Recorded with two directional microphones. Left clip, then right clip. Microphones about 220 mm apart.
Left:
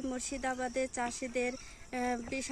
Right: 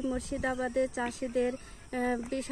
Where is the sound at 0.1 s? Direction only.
25° left (ahead or behind).